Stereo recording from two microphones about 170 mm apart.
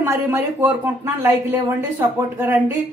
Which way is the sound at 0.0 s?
15° right (ahead or behind).